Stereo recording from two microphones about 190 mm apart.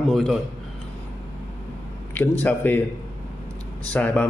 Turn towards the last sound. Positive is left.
turn(degrees=5)  # may be behind; listen again after turning